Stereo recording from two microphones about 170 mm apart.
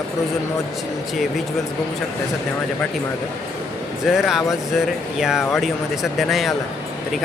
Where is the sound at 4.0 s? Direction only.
Centre (ahead or behind).